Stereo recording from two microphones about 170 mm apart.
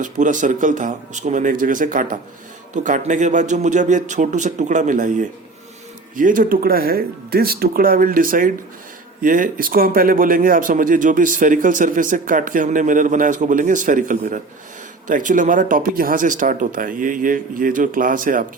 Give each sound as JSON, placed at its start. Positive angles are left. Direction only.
{"t": 0.0, "sound": "speech", "side_deg": -50}